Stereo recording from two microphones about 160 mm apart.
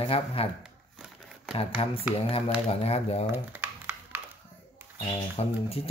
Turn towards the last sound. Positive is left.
turn(degrees=35)  # may be behind; listen again after turning